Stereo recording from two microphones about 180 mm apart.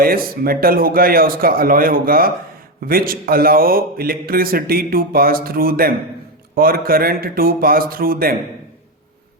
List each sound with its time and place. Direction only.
0.0 s a man's voice: 55° right (ahead or behind)